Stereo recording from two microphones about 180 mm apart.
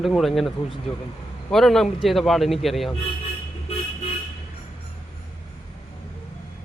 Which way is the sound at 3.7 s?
35° left (ahead or behind).